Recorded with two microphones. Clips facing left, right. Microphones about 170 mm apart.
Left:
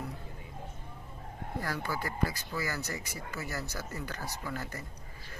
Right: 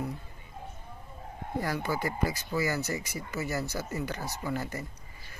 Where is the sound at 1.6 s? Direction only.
15° right (ahead or behind).